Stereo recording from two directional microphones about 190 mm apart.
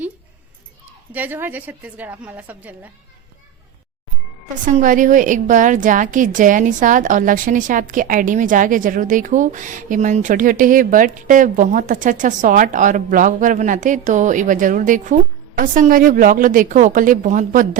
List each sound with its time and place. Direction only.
1.1 s a woman's voice: 10° right (ahead or behind)
4.6 s a woman's voice: 45° right (ahead or behind)